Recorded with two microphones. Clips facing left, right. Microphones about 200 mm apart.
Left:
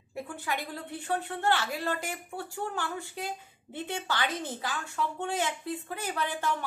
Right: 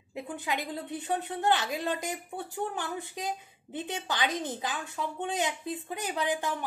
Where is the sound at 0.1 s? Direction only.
20° right (ahead or behind).